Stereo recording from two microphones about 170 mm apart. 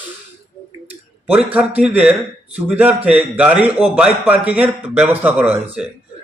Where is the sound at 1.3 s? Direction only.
5° right (ahead or behind).